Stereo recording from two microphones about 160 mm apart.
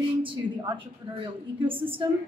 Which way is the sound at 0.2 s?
30° right (ahead or behind).